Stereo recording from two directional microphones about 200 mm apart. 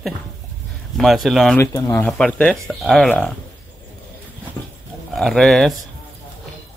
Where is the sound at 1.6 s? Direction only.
15° left (ahead or behind).